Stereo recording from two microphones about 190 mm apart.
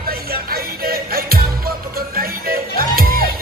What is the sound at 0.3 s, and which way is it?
Music, 50° right (ahead or behind).